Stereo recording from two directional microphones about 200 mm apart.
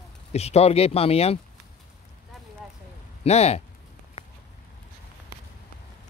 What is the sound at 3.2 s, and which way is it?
Speech, 30° left (ahead or behind).